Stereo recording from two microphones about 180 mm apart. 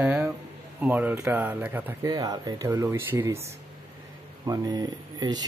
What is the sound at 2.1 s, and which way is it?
Speech, 20° right (ahead or behind).